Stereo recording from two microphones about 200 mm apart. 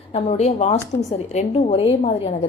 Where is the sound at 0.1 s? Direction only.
30° left (ahead or behind).